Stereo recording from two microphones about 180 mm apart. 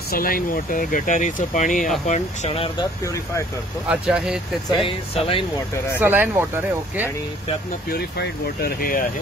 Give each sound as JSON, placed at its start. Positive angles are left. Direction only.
{"t": 0.1, "sound": "speech", "side_deg": 55}
{"t": 3.9, "sound": "speech", "side_deg": -5}
{"t": 4.8, "sound": "speech", "side_deg": 30}
{"t": 5.9, "sound": "speech", "side_deg": -10}
{"t": 7.9, "sound": "speech", "side_deg": 60}